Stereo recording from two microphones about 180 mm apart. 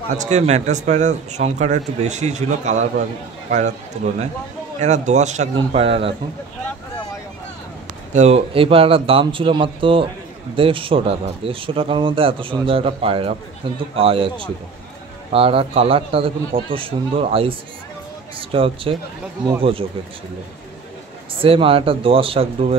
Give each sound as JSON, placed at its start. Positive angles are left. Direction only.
{"t": 0.2, "sound": "a man's voice", "side_deg": -40}
{"t": 4.7, "sound": "a man's voice", "side_deg": -40}
{"t": 8.1, "sound": "a man's voice", "side_deg": -35}
{"t": 15.3, "sound": "a man's voice", "side_deg": -30}
{"t": 21.4, "sound": "a man's voice", "side_deg": -30}